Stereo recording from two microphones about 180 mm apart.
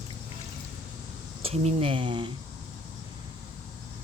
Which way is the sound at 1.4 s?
30° right (ahead or behind).